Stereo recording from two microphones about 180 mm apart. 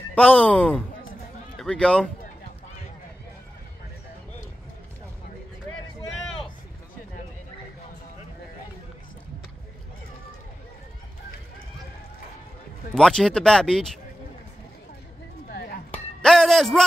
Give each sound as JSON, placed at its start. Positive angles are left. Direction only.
{"t": 0.1, "sound": "a man's voice", "side_deg": 5}
{"t": 12.9, "sound": "speech", "side_deg": 5}
{"t": 15.5, "sound": "a sound", "side_deg": 60}
{"t": 15.9, "sound": "music", "side_deg": 5}